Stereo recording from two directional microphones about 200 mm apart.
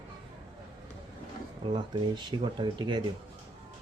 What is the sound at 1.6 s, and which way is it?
Speech, 20° right (ahead or behind).